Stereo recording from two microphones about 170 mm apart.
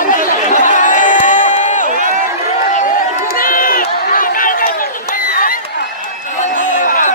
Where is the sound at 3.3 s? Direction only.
55° left (ahead or behind).